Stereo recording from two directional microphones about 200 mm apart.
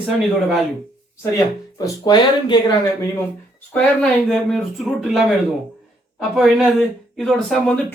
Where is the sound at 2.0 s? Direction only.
20° left (ahead or behind).